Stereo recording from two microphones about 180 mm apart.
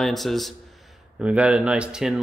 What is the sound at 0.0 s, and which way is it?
A man's voice, centre (ahead or behind).